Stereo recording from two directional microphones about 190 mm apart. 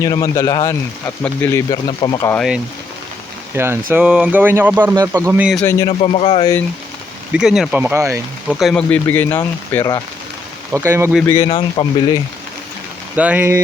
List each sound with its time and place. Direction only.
0.0 s speech: 20° left (ahead or behind)
2.3 s speech: centre (ahead or behind)
3.5 s speech: 10° right (ahead or behind)
5.5 s speech: 15° left (ahead or behind)
6.0 s speech: 30° left (ahead or behind)
6.4 s speech: 15° left (ahead or behind)
7.3 s speech: centre (ahead or behind)
8.5 s speech: centre (ahead or behind)
10.8 s speech: 15° right (ahead or behind)
11.4 s speech: 30° left (ahead or behind)
13.1 s speech: 10° right (ahead or behind)